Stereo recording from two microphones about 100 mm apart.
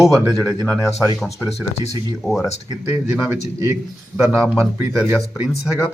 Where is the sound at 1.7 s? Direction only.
90° left.